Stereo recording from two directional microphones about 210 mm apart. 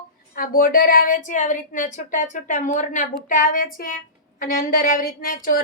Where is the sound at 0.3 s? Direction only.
45° left (ahead or behind).